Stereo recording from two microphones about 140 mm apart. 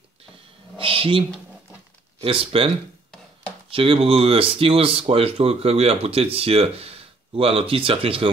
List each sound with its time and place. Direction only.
0.7 s a sound: 40° right (ahead or behind)
2.1 s speech: 40° right (ahead or behind)
3.7 s speech: 40° right (ahead or behind)